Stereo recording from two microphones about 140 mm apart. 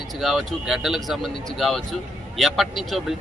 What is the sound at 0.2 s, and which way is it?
A man's voice, centre (ahead or behind).